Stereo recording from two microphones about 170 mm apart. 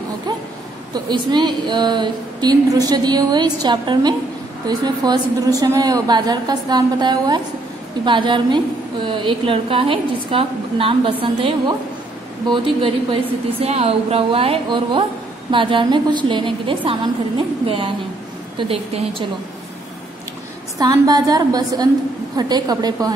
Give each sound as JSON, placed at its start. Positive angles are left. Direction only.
{"t": 0.9, "sound": "a woman's voice", "side_deg": -25}
{"t": 20.7, "sound": "speech", "side_deg": -20}